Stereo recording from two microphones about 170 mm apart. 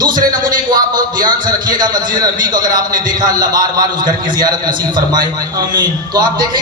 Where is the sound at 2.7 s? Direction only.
55° right (ahead or behind).